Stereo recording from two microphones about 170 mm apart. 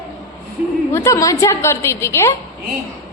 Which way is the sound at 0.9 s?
20° left (ahead or behind).